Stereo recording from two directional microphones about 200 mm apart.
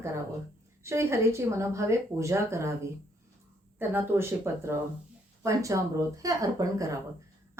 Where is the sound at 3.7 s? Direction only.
10° right (ahead or behind).